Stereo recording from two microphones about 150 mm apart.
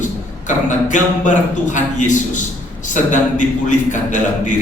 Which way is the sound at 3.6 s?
55° left (ahead or behind).